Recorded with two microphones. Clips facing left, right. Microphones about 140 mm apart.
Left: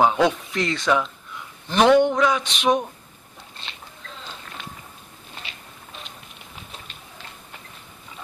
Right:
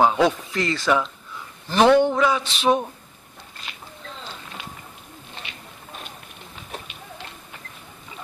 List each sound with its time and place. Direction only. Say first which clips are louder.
0.0 s speech: even; centre (ahead or behind)
1.7 s a sound: even; 5° right (ahead or behind)
2.4 s speech: right 1 dB; 15° left (ahead or behind)
3.6 s speech: right 1 dB; 30° left (ahead or behind)